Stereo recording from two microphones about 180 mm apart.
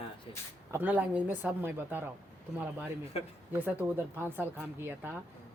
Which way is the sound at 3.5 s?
10° right (ahead or behind).